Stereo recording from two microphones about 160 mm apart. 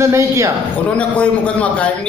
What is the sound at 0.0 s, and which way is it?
Speech, 20° right (ahead or behind).